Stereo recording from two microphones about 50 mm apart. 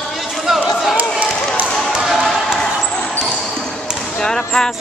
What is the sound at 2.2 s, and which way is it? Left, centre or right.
Basketball bounce, centre.